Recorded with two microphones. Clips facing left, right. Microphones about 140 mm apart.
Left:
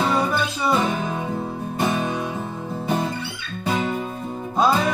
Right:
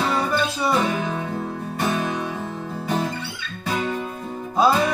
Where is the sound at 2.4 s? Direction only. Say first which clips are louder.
Left 1 dB; 20° left (ahead or behind).